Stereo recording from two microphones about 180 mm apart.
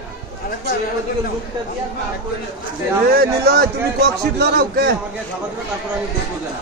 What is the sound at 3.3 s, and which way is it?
A man's voice, 65° right (ahead or behind).